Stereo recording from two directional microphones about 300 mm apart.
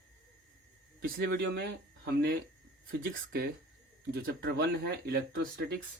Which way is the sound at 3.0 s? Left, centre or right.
Right.